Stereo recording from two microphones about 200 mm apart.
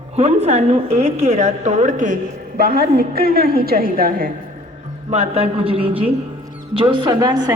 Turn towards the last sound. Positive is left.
turn(degrees=-20)  # may be behind; listen again after turning